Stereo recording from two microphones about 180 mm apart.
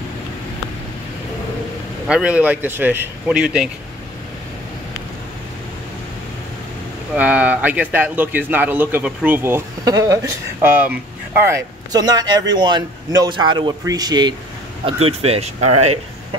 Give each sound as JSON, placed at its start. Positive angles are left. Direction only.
{"t": 2.0, "sound": "a man's voice", "side_deg": -5}
{"t": 7.2, "sound": "a man's voice", "side_deg": -10}
{"t": 14.9, "sound": "speech", "side_deg": -35}